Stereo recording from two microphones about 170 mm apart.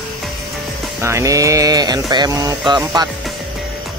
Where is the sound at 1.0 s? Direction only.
20° right (ahead or behind).